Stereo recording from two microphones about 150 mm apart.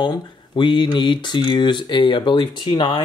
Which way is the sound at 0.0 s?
30° left (ahead or behind).